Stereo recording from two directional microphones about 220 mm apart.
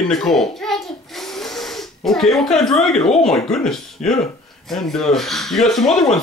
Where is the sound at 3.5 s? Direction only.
Centre (ahead or behind).